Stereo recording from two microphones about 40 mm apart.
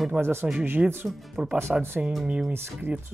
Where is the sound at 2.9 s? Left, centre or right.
Right.